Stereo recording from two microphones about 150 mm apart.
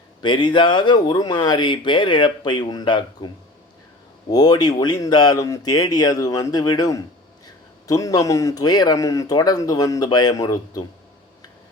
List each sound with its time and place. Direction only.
0.2 s speech: 30° left (ahead or behind)